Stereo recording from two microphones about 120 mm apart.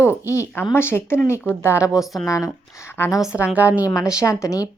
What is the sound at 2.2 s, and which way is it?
Speech, 25° left (ahead or behind).